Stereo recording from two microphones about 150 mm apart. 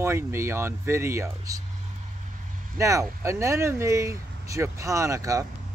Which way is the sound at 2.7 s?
20° right (ahead or behind).